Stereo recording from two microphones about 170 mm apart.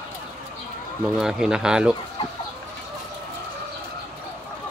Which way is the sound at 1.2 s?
5° right (ahead or behind).